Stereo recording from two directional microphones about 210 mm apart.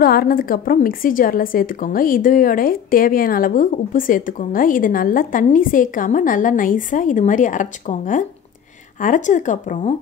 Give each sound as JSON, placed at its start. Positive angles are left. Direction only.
{"t": 0.0, "sound": "a woman's voice", "side_deg": 45}